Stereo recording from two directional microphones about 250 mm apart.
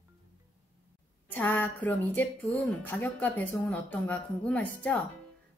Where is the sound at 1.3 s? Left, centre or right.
Centre.